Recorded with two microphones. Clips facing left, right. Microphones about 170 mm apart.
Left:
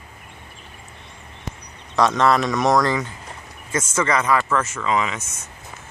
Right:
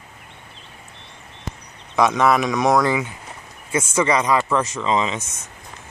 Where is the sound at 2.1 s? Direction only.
5° right (ahead or behind); by 5.2 s 25° right (ahead or behind).